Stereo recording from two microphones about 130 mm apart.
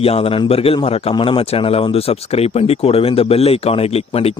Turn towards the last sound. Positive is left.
turn(degrees=50)  # may be behind; listen again after turning